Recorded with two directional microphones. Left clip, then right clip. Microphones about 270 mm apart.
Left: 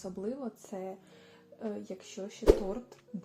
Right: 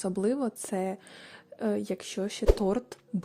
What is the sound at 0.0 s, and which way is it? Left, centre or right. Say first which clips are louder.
A woman's voice: right 9 dB; right.